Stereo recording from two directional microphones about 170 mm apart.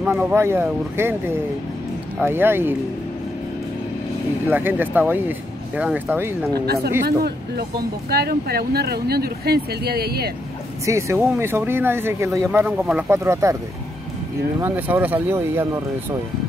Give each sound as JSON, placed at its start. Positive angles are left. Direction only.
{"t": 0.0, "sound": "speech", "side_deg": -10}
{"t": 4.5, "sound": "speech", "side_deg": -10}
{"t": 6.6, "sound": "speech", "side_deg": -70}
{"t": 10.9, "sound": "speech", "side_deg": -15}
{"t": 14.6, "sound": "speech", "side_deg": -10}